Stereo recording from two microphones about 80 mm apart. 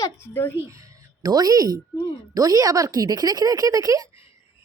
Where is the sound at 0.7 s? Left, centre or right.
Right.